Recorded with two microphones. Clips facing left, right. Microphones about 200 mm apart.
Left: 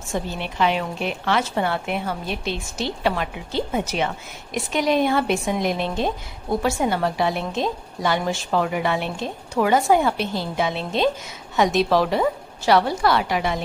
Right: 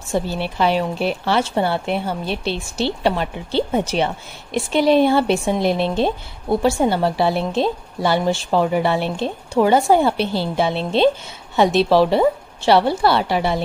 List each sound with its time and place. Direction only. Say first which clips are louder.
0.1 s a woman's voice: right 5 dB; 35° right (ahead or behind)